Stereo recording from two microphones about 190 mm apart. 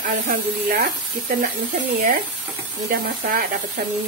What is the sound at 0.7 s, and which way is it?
Speech, 55° right (ahead or behind).